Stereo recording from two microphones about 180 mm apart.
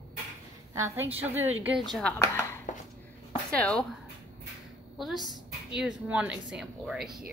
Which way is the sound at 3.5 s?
5° left (ahead or behind).